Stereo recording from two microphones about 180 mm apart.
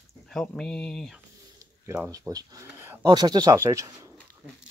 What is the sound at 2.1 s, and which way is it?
Speech, 20° right (ahead or behind).